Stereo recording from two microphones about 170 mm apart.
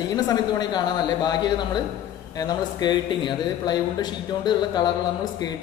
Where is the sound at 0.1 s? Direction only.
25° left (ahead or behind).